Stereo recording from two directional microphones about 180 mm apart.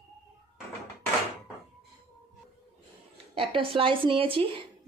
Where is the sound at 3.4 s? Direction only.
30° right (ahead or behind).